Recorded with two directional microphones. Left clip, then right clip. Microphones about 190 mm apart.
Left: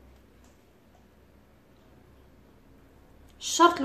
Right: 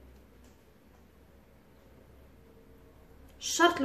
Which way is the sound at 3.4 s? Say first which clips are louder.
Left 5 dB; 15° left (ahead or behind).